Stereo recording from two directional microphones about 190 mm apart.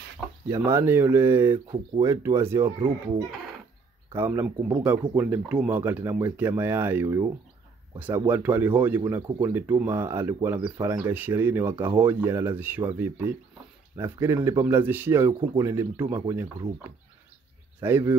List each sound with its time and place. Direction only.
0.5 s speech: 15° right (ahead or behind)
4.1 s speech: 10° right (ahead or behind)
8.3 s speech: 10° right (ahead or behind)
17.8 s speech: 10° right (ahead or behind)